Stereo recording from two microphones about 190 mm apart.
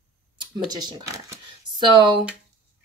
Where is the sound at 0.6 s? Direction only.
20° right (ahead or behind).